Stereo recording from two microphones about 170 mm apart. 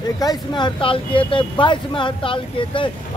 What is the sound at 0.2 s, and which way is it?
Speech, 25° left (ahead or behind).